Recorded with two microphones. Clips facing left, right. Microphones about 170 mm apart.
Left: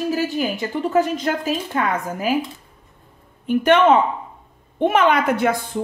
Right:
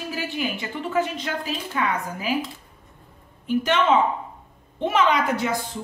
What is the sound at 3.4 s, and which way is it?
A woman's voice, 55° left (ahead or behind).